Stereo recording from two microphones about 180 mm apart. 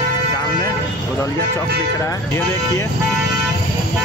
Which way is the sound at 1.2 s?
20° left (ahead or behind).